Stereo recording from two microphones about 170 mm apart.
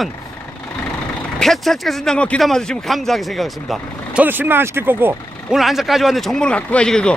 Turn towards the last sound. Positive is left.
turn(degrees=5)  # may be behind; listen again after turning